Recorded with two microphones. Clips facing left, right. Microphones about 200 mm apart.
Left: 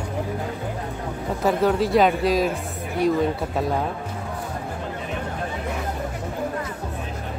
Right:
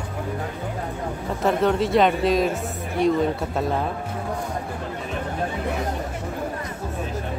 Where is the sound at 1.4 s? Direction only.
Centre (ahead or behind).